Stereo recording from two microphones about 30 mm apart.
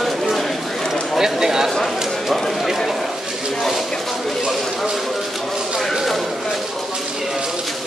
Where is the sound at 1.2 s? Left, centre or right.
Centre.